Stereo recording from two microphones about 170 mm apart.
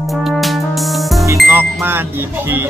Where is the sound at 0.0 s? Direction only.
Centre (ahead or behind).